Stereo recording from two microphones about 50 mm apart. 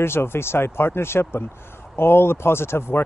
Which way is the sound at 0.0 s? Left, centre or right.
Left.